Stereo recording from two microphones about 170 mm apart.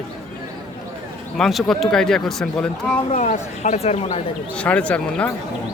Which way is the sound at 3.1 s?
45° left (ahead or behind).